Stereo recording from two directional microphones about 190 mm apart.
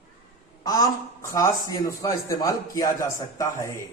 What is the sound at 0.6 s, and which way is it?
A man's voice, 20° left (ahead or behind).